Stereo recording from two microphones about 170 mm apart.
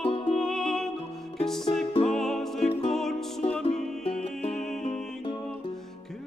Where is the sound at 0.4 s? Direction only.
Centre (ahead or behind).